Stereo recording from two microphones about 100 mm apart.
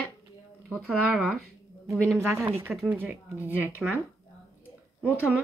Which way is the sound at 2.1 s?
20° right (ahead or behind).